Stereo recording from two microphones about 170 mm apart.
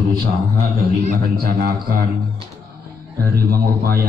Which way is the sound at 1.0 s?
55° right (ahead or behind).